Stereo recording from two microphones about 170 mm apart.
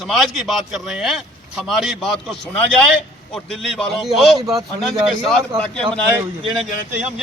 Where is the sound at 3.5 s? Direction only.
Centre (ahead or behind).